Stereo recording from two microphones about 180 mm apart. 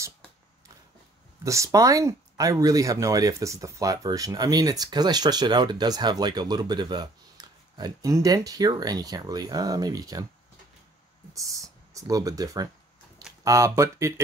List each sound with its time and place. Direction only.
1.4 s speech: 15° right (ahead or behind)
11.3 s speech: 20° right (ahead or behind)